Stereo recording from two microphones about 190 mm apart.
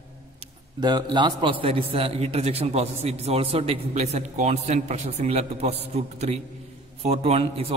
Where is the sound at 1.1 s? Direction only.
25° right (ahead or behind).